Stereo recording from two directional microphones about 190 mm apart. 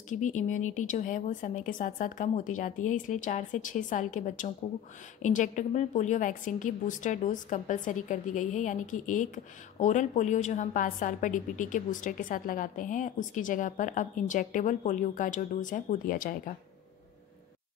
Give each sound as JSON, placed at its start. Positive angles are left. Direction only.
{"t": 0.1, "sound": "a woman's voice", "side_deg": 40}